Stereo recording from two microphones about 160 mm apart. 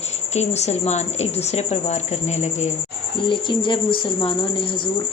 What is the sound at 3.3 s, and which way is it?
Speech, 30° left (ahead or behind).